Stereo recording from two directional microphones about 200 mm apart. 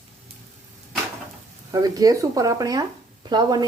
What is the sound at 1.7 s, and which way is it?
Speech, 20° right (ahead or behind).